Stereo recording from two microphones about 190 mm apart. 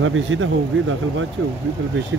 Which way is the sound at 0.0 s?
90° right.